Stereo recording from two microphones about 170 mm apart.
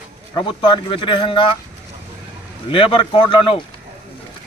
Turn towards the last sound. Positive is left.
turn(degrees=30)  # may be behind; listen again after turning